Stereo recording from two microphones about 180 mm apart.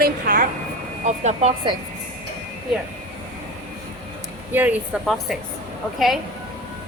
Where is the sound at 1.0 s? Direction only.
40° right (ahead or behind).